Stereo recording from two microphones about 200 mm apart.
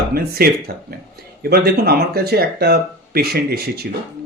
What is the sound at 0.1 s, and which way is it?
Speech, 50° right (ahead or behind).